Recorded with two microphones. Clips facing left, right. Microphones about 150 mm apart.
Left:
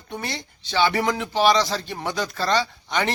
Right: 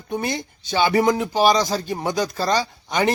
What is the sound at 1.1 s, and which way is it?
A man's voice, 40° right (ahead or behind).